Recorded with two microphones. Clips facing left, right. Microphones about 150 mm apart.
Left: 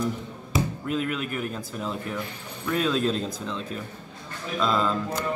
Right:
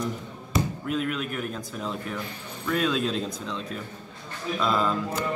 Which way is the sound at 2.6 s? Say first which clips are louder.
Left 1 dB; centre (ahead or behind).